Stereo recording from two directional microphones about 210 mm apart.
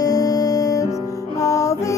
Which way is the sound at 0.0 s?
15° left (ahead or behind).